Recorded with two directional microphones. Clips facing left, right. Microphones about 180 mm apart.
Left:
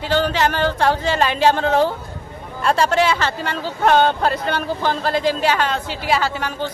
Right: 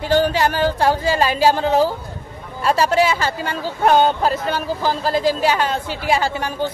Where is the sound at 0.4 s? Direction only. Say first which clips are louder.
Right 1 dB; 10° right (ahead or behind).